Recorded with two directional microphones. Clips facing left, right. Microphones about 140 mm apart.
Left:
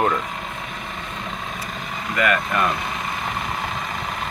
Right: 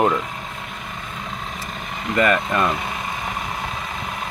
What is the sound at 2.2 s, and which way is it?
Speech, 25° right (ahead or behind).